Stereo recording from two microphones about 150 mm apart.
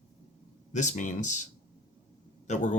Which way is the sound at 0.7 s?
55° left (ahead or behind).